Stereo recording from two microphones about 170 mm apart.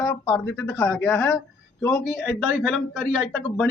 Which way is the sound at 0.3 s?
10° left (ahead or behind).